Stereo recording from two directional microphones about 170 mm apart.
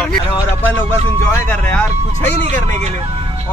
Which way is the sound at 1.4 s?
10° left (ahead or behind).